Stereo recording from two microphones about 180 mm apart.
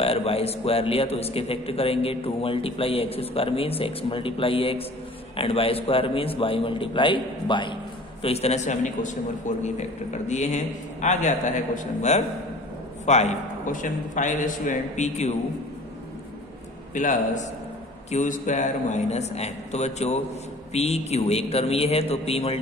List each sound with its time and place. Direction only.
0.0 s a man's voice: 35° left (ahead or behind)
16.9 s a man's voice: 45° left (ahead or behind)